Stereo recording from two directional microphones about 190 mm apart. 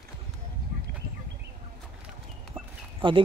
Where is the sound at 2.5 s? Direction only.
25° right (ahead or behind).